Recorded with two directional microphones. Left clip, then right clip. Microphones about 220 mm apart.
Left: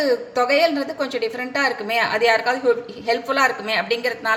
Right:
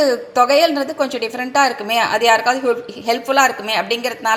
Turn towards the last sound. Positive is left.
turn(degrees=-15)  # may be behind; listen again after turning